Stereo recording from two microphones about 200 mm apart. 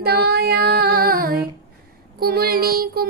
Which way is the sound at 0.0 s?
50° right (ahead or behind).